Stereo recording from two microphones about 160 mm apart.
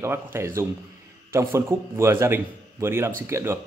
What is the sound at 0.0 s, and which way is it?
A man's voice, 15° right (ahead or behind).